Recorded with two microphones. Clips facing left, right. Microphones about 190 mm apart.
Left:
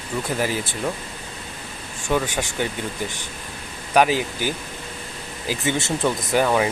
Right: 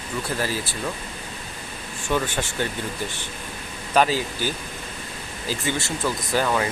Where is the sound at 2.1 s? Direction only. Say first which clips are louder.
Left 2 dB; 10° left (ahead or behind).